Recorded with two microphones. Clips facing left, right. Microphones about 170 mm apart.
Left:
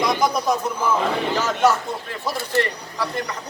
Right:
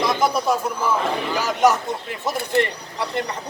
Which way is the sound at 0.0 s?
5° right (ahead or behind).